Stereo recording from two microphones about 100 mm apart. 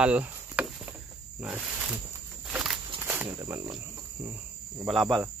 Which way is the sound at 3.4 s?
40° right (ahead or behind).